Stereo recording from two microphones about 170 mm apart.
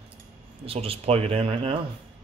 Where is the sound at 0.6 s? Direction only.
35° right (ahead or behind).